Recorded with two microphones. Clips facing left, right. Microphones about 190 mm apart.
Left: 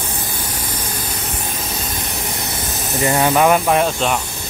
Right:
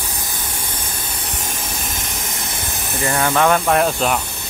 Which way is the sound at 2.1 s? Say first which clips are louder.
Left 3 dB; 45° right (ahead or behind).